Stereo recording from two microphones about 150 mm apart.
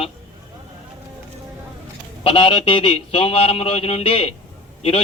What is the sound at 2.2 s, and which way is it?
Speech, 40° left (ahead or behind).